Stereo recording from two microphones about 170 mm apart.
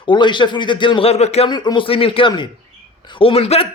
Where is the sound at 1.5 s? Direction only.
25° left (ahead or behind).